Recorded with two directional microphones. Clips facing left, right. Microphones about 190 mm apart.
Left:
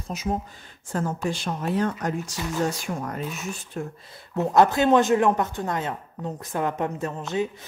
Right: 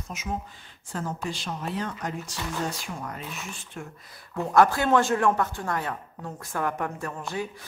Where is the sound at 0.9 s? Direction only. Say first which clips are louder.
Left 5 dB; 50° left (ahead or behind).